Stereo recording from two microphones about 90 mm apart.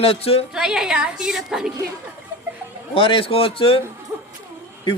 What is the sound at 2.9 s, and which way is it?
Speech, 80° left.